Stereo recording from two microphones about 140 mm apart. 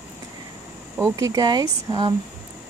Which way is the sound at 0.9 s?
20° right (ahead or behind).